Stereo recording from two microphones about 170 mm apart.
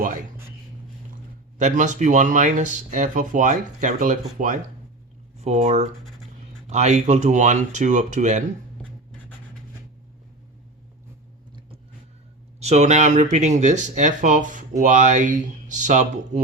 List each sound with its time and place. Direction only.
1.5 s speech: 45° right (ahead or behind)
12.5 s speech: 40° right (ahead or behind)